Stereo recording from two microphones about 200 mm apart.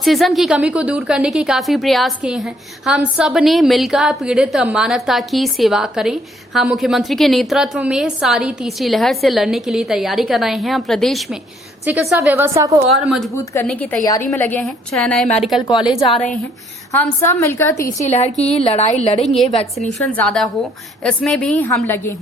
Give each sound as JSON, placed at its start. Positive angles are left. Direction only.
{"t": 0.0, "sound": "a woman's voice", "side_deg": 0}
{"t": 12.9, "sound": "speech", "side_deg": 0}
{"t": 13.3, "sound": "a woman's voice", "side_deg": 15}
{"t": 14.0, "sound": "a woman's voice", "side_deg": 15}
{"t": 16.0, "sound": "a woman's voice", "side_deg": 25}
{"t": 16.9, "sound": "a woman's voice", "side_deg": 10}
{"t": 18.0, "sound": "a woman's voice", "side_deg": 35}
{"t": 20.1, "sound": "speech", "side_deg": 5}